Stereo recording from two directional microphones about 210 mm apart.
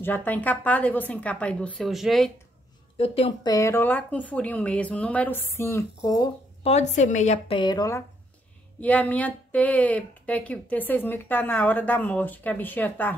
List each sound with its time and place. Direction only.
0.0 s speech: 10° left (ahead or behind)
3.0 s speech: 25° left (ahead or behind)
3.5 s speech: 10° left (ahead or behind)
6.6 s speech: 30° left (ahead or behind)
8.8 s speech: 5° left (ahead or behind)